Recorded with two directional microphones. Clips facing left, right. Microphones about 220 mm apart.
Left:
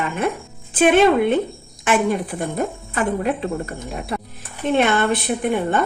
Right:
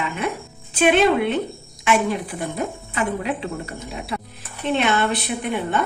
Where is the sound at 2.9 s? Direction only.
50° left (ahead or behind).